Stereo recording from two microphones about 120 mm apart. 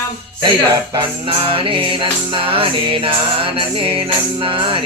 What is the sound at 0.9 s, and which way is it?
Music, 45° right (ahead or behind).